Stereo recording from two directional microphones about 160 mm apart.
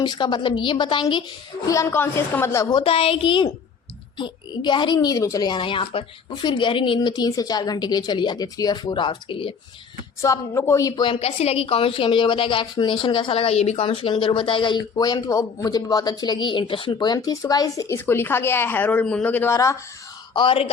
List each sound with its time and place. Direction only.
0.0 s a woman's voice: 25° left (ahead or behind)
1.6 s a woman's voice: 20° left (ahead or behind)
2.8 s a woman's voice: 35° left (ahead or behind)
10.2 s a woman's voice: 20° left (ahead or behind)
20.3 s a woman's voice: 30° left (ahead or behind)